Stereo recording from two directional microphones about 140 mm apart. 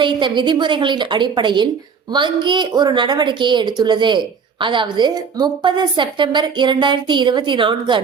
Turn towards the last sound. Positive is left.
turn(degrees=-35)  # may be behind; listen again after turning